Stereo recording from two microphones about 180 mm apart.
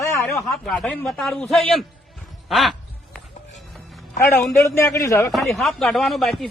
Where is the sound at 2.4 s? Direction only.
Centre (ahead or behind).